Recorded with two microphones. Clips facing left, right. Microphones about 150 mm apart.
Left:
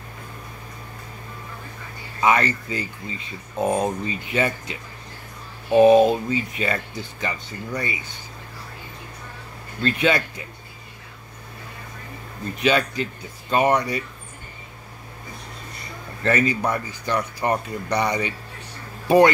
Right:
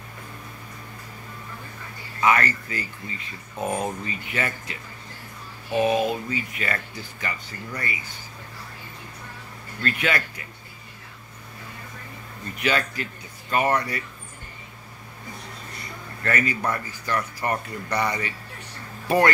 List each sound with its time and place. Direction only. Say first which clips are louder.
2.1 s speech: left 2 dB; 20° left (ahead or behind)
5.7 s speech: left 9 dB; 35° left (ahead or behind)
9.8 s speech: left 5 dB; 25° left (ahead or behind)
12.5 s speech: left 5 dB; 20° left (ahead or behind)
16.2 s speech: left 5 dB; 25° left (ahead or behind)